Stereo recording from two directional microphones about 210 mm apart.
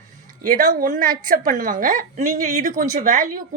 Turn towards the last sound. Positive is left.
turn(degrees=-40)  # may be behind; listen again after turning